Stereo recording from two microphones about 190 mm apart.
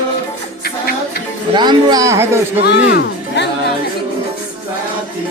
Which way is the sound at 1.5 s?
20° right (ahead or behind).